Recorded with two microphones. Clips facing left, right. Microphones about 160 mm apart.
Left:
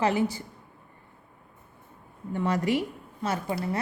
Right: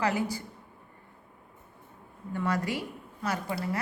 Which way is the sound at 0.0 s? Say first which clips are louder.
Left 4 dB; 25° left (ahead or behind).